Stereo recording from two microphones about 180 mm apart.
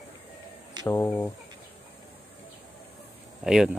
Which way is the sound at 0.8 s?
15° left (ahead or behind).